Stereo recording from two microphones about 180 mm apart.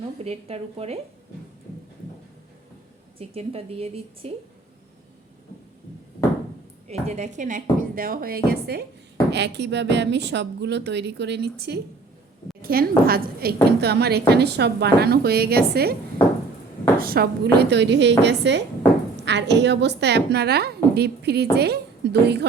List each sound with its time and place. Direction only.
0.2 s a woman's voice: 35° right (ahead or behind)
3.2 s a woman's voice: 35° right (ahead or behind)
6.8 s a woman's voice: 40° right (ahead or behind); by 16.0 s 60° right (ahead or behind)
17.0 s a woman's voice: 55° right (ahead or behind)